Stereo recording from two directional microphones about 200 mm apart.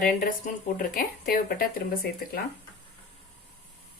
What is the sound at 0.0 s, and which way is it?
Speech, 45° left (ahead or behind).